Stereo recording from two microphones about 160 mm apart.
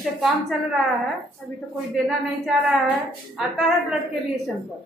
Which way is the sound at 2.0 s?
5° right (ahead or behind).